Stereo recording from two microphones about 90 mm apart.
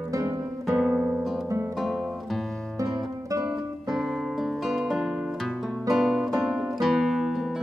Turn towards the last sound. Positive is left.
turn(degrees=-5)  # may be behind; listen again after turning